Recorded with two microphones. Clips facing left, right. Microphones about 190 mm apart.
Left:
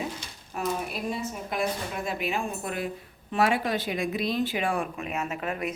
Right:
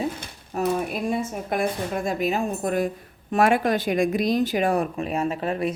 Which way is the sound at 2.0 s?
40° right (ahead or behind).